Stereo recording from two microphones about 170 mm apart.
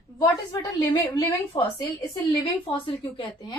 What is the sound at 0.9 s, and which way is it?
A woman's voice, 25° left (ahead or behind).